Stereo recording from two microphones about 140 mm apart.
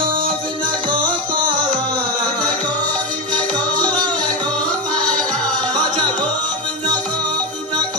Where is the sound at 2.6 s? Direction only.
10° left (ahead or behind).